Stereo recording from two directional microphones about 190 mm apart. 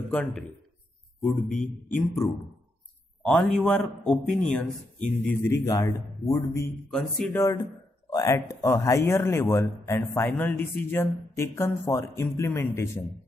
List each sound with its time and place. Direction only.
0.1 s a man's voice: 5° left (ahead or behind)
2.2 s speech: 15° left (ahead or behind)
3.2 s a man's voice: centre (ahead or behind)
5.4 s speech: 15° left (ahead or behind)
6.9 s a man's voice: 5° left (ahead or behind)
8.1 s speech: 15° left (ahead or behind)